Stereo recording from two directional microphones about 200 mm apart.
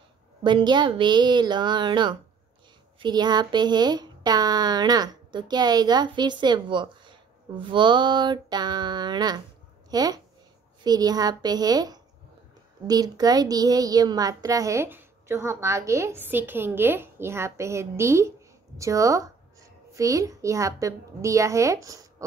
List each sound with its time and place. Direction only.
0.4 s a child's voice: 25° right (ahead or behind)